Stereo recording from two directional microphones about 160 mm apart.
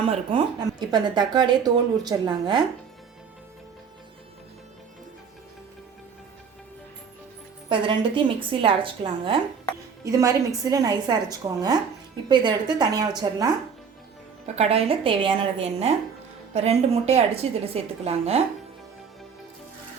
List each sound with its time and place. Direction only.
0.0 s a woman's voice: 35° right (ahead or behind)
7.7 s speech: 30° right (ahead or behind)
10.0 s a woman's voice: 20° right (ahead or behind)
14.4 s speech: 40° right (ahead or behind)